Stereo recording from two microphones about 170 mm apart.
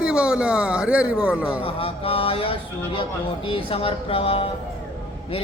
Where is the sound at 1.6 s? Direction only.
35° left (ahead or behind).